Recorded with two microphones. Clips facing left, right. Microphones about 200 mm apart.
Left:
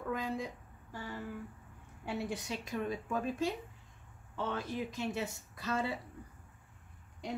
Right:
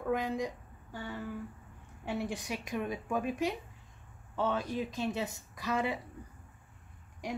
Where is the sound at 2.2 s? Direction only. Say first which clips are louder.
Right 1 dB; 15° right (ahead or behind).